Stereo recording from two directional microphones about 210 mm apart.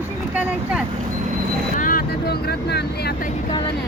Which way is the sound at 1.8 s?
40° left (ahead or behind).